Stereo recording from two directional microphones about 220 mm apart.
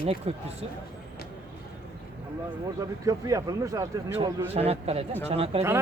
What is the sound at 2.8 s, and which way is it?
Speech, 15° right (ahead or behind).